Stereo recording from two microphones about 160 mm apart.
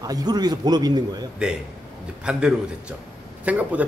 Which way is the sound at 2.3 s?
5° right (ahead or behind).